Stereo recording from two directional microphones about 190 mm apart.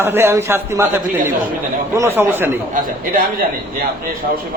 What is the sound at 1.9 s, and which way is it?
Speech, 15° right (ahead or behind).